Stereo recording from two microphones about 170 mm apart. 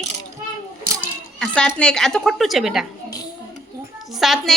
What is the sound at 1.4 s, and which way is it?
Speech, 5° left (ahead or behind).